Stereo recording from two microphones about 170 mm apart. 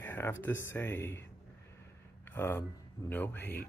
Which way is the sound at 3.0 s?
10° left (ahead or behind).